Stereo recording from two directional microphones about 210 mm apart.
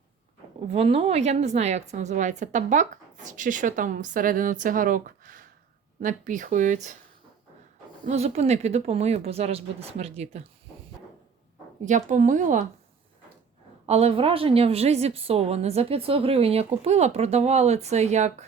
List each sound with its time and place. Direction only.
0.7 s a woman's voice: 25° right (ahead or behind)
8.0 s a woman's voice: 30° right (ahead or behind)
11.9 s a woman's voice: 35° right (ahead or behind)
13.8 s a woman's voice: 30° right (ahead or behind)